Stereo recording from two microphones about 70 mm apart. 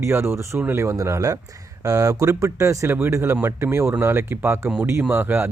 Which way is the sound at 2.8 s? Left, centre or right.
Right.